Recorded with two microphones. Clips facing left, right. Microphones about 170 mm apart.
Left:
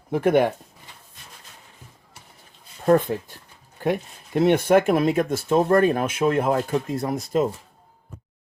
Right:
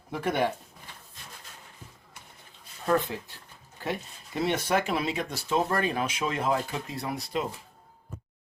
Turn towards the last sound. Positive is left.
turn(degrees=45)  # may be behind; listen again after turning